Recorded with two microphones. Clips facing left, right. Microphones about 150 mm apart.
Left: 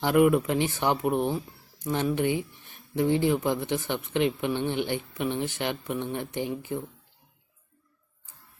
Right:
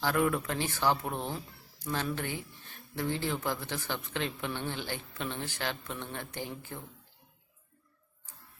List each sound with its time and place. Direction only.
0.0 s speech: 20° left (ahead or behind)